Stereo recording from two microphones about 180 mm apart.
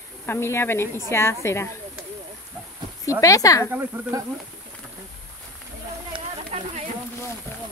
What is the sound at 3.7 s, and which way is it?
Speech, 10° right (ahead or behind).